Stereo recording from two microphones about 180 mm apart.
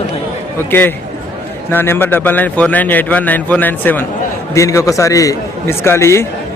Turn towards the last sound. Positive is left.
turn(degrees=15)  # may be behind; listen again after turning